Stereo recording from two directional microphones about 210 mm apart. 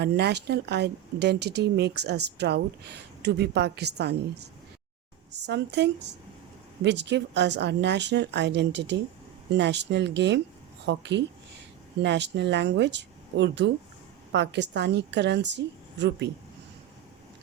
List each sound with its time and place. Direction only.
0.0 s a woman's voice: 50° right (ahead or behind)